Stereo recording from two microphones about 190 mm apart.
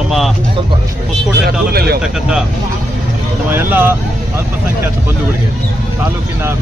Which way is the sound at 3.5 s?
10° right (ahead or behind).